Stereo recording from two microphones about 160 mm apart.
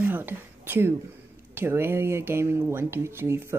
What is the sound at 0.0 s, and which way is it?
Whispering, 10° right (ahead or behind).